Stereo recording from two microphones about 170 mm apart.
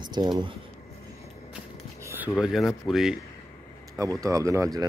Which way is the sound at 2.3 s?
Centre (ahead or behind).